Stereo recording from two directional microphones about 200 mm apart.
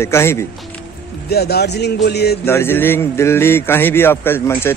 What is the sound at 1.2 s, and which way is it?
Speech, 55° left (ahead or behind).